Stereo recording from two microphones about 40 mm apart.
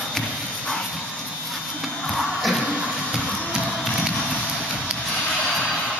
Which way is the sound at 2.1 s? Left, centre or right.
Centre.